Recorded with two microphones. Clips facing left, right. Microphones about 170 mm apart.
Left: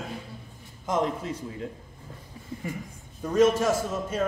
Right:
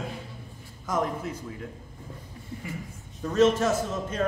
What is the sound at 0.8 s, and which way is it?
Speech, 25° left (ahead or behind).